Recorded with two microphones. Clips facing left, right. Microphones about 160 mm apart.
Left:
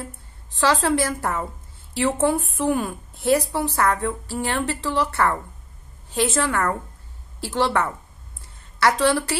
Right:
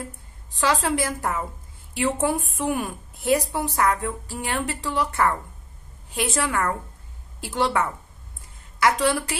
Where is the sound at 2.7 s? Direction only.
15° right (ahead or behind).